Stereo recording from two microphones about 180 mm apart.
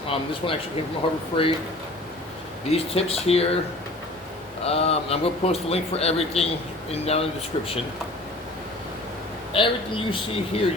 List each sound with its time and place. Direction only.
0.4 s speech: 30° left (ahead or behind)
2.6 s a man's voice: 35° left (ahead or behind)
4.6 s a man's voice: 35° left (ahead or behind)
9.5 s speech: 30° left (ahead or behind)